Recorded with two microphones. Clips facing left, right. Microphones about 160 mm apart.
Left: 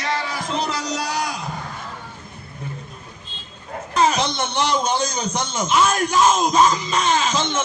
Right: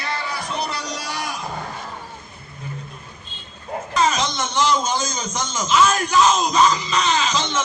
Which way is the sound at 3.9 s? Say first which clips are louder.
Left 2 dB; 60° left (ahead or behind).